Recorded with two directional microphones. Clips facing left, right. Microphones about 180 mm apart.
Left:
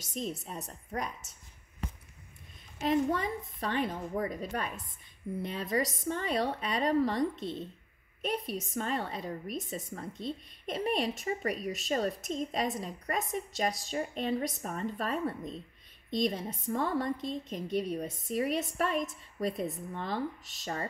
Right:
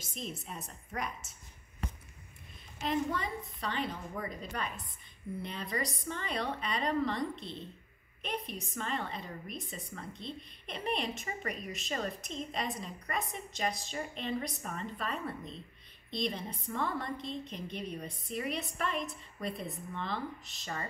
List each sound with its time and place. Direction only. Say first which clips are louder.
0.1 s a woman's voice: left 5 dB; 40° left (ahead or behind)
2.8 s a woman's voice: left 5 dB; 45° left (ahead or behind)